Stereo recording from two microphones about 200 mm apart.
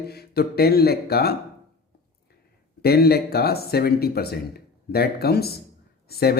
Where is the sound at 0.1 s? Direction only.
50° left (ahead or behind).